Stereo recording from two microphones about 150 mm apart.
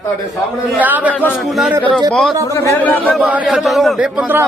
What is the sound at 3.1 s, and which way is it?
A man's voice, 5° right (ahead or behind).